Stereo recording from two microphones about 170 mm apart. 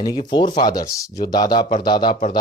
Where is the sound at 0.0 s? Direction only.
25° left (ahead or behind).